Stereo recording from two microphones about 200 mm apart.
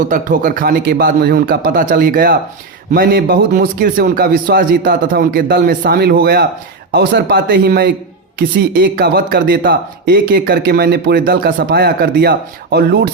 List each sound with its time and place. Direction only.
0.1 s a man's voice: 40° right (ahead or behind)